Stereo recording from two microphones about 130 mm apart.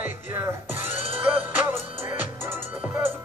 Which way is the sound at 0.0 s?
15° right (ahead or behind).